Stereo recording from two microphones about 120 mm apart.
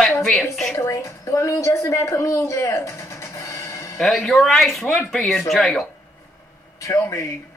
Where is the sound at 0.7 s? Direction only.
25° left (ahead or behind).